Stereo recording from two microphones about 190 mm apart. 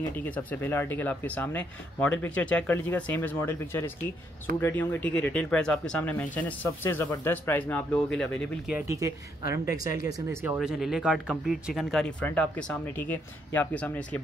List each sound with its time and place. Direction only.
0.2 s speech: 10° left (ahead or behind)
8.7 s speech: 15° right (ahead or behind)
10.6 s speech: centre (ahead or behind)